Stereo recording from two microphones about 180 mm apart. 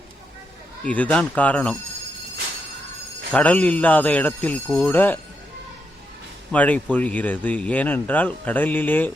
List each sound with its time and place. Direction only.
0.9 s speech: 10° left (ahead or behind)
3.3 s speech: 10° left (ahead or behind)
6.5 s speech: 10° left (ahead or behind)